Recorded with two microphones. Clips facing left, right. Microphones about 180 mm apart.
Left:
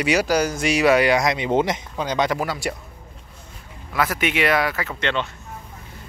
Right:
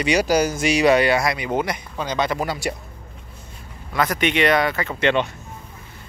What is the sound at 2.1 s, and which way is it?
Speech, 10° left (ahead or behind).